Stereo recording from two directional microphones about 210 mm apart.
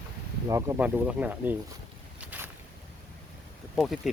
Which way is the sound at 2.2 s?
10° right (ahead or behind).